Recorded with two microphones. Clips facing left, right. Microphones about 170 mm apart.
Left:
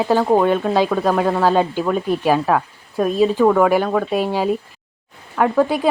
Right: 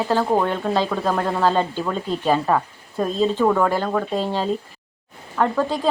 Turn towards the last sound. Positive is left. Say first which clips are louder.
# left 4 dB
turn(degrees=10)  # may be behind; listen again after turning